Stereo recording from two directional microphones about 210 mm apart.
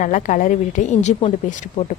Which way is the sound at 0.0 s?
35° left (ahead or behind).